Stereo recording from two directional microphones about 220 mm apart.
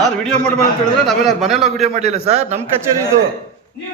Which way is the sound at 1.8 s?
30° right (ahead or behind).